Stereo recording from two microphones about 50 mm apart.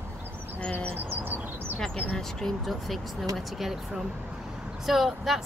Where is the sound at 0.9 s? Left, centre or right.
Right.